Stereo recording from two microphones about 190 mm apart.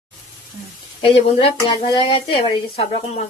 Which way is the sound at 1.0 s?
30° left (ahead or behind).